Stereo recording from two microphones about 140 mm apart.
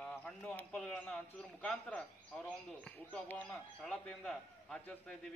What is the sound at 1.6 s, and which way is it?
A man's voice, 10° left (ahead or behind).